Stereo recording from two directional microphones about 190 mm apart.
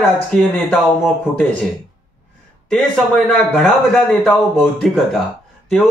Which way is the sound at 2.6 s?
Centre (ahead or behind).